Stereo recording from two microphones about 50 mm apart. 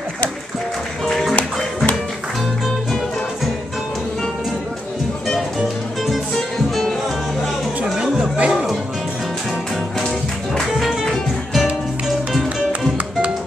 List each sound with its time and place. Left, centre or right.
1.0 s music: centre
6.7 s music: centre
8.2 s music: right
9.9 s music: centre